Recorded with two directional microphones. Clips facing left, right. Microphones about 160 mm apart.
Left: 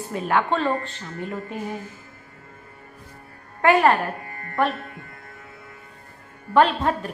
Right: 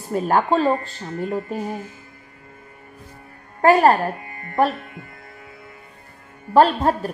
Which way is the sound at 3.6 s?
40° right (ahead or behind).